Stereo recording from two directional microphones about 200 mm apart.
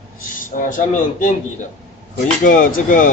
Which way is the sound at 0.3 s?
40° left (ahead or behind).